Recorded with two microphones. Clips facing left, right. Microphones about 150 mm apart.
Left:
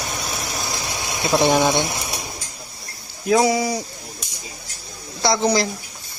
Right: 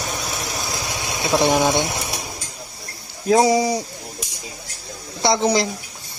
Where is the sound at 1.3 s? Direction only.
Centre (ahead or behind).